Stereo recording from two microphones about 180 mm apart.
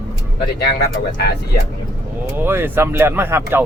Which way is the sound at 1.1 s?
60° left (ahead or behind).